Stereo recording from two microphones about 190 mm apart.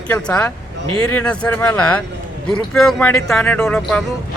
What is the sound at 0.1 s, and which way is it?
Speech, 5° left (ahead or behind).